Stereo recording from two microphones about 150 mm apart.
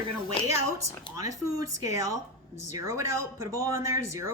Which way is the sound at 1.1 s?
20° right (ahead or behind).